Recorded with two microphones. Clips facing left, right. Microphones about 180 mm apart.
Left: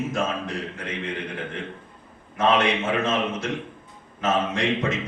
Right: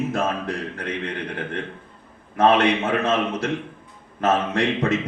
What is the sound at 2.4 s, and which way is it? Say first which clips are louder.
A man's voice: right 4 dB; 60° right (ahead or behind).